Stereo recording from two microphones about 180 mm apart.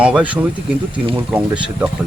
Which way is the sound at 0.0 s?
5° right (ahead or behind).